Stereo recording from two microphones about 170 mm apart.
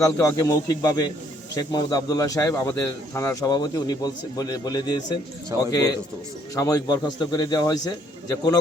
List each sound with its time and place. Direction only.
0.0 s speech: 20° left (ahead or behind)
5.5 s speech: 20° right (ahead or behind)
6.6 s speech: 20° left (ahead or behind)